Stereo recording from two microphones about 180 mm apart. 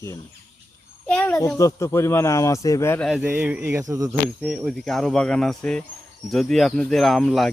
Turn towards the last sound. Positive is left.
turn(degrees=0)  # may be behind; listen again after turning